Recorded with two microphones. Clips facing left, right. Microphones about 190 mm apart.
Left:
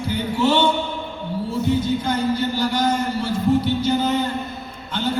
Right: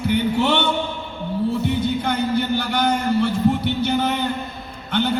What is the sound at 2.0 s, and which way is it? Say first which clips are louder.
A man's voice: even; 60° right (ahead or behind).